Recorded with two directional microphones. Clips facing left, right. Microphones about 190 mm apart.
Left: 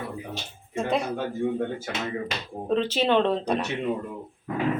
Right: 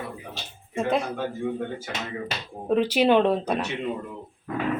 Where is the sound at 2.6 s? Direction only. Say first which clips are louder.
Right 3 dB; 10° right (ahead or behind).